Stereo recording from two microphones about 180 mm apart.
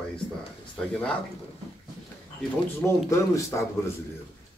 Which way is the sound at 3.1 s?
15° left (ahead or behind).